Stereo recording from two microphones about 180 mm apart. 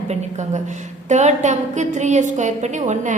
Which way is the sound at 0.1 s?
40° right (ahead or behind).